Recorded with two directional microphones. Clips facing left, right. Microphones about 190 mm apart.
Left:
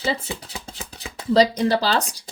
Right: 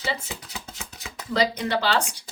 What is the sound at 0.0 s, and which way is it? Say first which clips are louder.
Speech: left 5 dB; 30° left (ahead or behind).